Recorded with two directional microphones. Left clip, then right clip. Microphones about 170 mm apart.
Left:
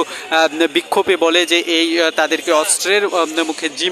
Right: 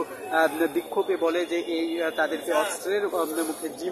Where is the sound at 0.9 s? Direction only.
35° left (ahead or behind).